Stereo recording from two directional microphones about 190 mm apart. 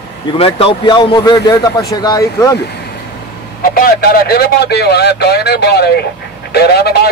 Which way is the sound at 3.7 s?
50° left (ahead or behind).